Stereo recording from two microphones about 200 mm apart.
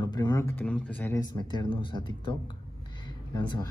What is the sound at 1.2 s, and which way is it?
A man's voice, 20° left (ahead or behind).